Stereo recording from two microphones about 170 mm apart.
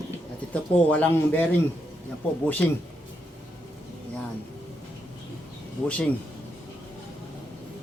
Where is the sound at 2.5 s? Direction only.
10° left (ahead or behind).